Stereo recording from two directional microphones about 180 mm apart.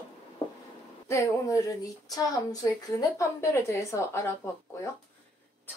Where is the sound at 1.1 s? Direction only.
15° left (ahead or behind).